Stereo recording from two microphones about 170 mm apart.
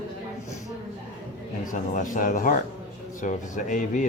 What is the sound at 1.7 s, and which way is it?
Speech, 50° left (ahead or behind).